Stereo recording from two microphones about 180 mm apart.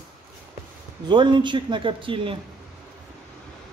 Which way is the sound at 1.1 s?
25° right (ahead or behind).